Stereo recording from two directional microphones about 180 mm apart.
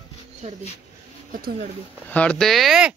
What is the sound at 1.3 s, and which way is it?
Speech, 50° right (ahead or behind).